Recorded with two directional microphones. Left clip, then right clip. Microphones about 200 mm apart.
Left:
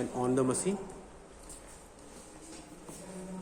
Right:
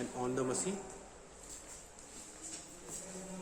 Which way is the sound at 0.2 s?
55° left (ahead or behind).